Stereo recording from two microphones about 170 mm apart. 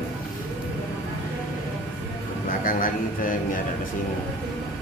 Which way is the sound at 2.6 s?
55° left (ahead or behind).